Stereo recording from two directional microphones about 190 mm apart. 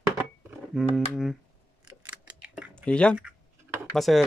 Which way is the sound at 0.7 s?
Centre (ahead or behind).